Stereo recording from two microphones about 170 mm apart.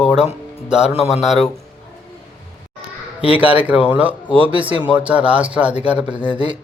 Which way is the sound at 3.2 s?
10° right (ahead or behind).